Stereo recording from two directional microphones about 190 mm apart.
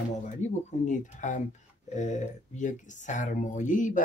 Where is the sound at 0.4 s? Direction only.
40° left (ahead or behind).